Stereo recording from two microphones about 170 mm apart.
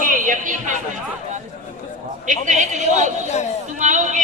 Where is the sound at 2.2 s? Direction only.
45° right (ahead or behind).